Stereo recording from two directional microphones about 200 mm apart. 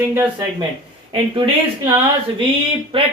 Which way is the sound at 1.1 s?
25° right (ahead or behind).